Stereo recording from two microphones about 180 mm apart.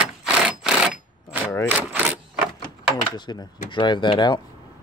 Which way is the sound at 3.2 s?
25° left (ahead or behind).